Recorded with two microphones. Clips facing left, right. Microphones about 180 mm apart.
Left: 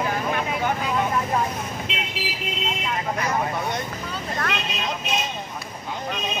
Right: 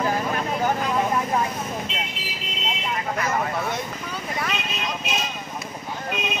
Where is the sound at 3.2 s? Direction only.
Centre (ahead or behind).